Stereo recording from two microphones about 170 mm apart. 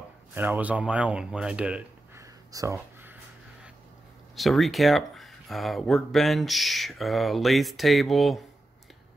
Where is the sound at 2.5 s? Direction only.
15° right (ahead or behind).